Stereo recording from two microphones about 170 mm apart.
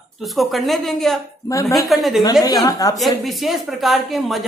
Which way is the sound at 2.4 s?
20° left (ahead or behind).